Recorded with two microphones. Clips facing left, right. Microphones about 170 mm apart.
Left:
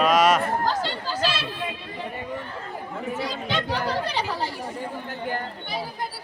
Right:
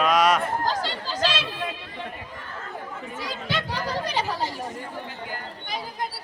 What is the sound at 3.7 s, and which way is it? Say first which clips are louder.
Chatter: left 2 dB; 15° right (ahead or behind).